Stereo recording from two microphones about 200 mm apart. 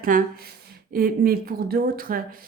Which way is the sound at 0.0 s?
45° right (ahead or behind).